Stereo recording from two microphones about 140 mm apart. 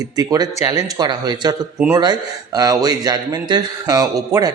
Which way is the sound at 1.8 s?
15° right (ahead or behind).